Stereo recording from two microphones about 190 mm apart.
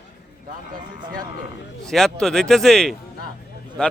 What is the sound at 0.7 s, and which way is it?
Speech, 20° right (ahead or behind).